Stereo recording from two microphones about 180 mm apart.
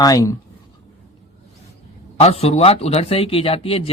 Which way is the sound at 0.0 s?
20° left (ahead or behind).